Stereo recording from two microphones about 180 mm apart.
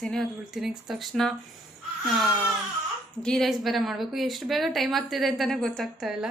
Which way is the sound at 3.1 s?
5° left (ahead or behind).